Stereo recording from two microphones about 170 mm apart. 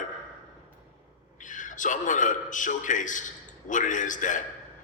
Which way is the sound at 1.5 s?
50° left (ahead or behind).